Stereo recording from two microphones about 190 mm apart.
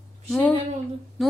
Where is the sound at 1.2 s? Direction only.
Centre (ahead or behind).